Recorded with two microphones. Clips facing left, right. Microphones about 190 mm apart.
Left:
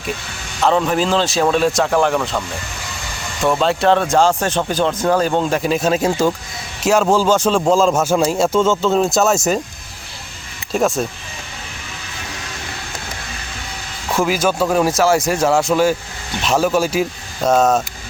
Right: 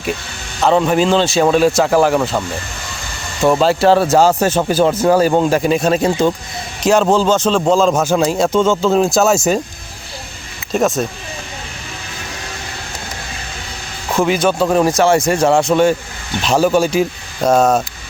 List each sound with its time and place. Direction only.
0.6 s speech: centre (ahead or behind)
3.6 s speech: 5° right (ahead or behind)
7.6 s speech: centre (ahead or behind)
10.7 s speech: 5° right (ahead or behind)
14.2 s speech: 5° left (ahead or behind)